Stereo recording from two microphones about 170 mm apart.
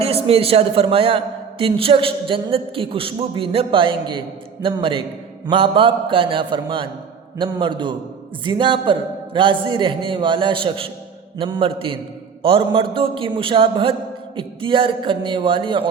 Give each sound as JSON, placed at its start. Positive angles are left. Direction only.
{"t": 0.0, "sound": "a man's voice", "side_deg": -35}